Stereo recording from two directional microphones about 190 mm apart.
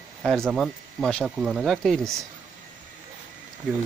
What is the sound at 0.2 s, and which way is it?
Speech, centre (ahead or behind).